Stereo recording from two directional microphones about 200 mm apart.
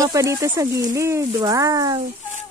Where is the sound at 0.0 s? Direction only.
15° right (ahead or behind).